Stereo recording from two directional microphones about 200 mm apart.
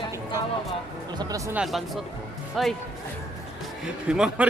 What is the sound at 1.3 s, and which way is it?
Speech, 5° right (ahead or behind).